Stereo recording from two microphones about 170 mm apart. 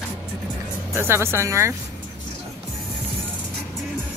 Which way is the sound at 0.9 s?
15° right (ahead or behind).